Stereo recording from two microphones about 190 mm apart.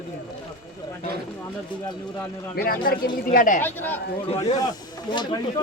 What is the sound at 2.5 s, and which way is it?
Speech, 50° left (ahead or behind).